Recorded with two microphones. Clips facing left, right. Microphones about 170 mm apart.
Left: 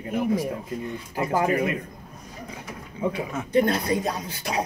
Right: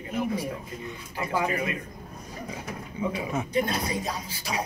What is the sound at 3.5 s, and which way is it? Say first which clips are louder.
Speech: left 8 dB; 55° left (ahead or behind).